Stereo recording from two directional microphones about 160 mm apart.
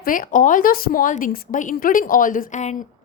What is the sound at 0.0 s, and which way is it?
A woman's voice, 60° left (ahead or behind).